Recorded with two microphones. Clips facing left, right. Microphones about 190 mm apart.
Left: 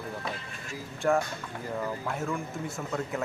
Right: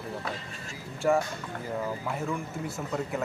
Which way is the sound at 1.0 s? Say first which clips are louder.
Right 1 dB; 5° right (ahead or behind).